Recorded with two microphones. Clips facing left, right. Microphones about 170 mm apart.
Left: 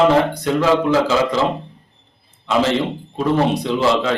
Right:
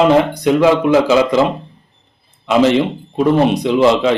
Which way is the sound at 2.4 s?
15° right (ahead or behind).